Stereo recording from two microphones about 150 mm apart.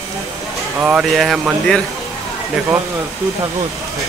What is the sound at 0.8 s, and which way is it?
Speech, 10° right (ahead or behind).